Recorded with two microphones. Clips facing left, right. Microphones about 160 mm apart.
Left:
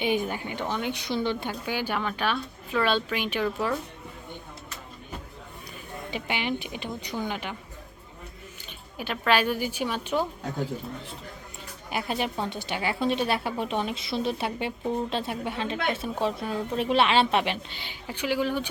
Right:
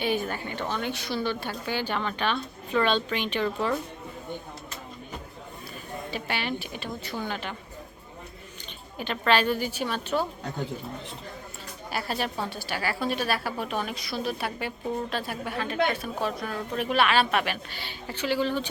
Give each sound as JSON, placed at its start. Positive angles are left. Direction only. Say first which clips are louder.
{"t": 0.0, "sound": "a woman's voice", "louder": "left 1 dB", "side_deg": 15}
{"t": 6.1, "sound": "a woman's voice", "louder": "left 2 dB", "side_deg": 15}
{"t": 9.0, "sound": "a woman's voice", "louder": "even", "side_deg": 5}
{"t": 11.9, "sound": "a woman's voice", "louder": "left 1 dB", "side_deg": 20}